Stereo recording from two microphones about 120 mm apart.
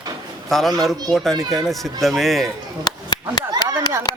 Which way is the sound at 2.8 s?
35° left (ahead or behind).